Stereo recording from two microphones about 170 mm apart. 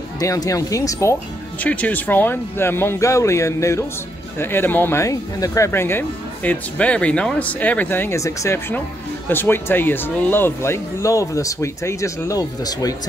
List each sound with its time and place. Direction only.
0.2 s speech: 20° left (ahead or behind)